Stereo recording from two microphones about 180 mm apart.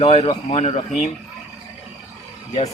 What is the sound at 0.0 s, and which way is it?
Speech, 35° left (ahead or behind).